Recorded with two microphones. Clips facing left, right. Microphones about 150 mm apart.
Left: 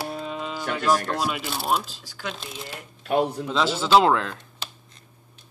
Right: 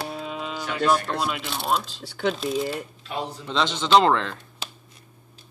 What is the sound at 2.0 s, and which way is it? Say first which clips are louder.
Speech: right 9 dB; 65° right (ahead or behind).